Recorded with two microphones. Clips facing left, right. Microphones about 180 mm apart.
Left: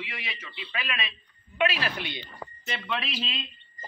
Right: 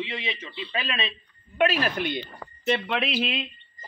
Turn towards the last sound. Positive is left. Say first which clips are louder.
# right 7 dB
turn(degrees=-60)  # may be behind; listen again after turning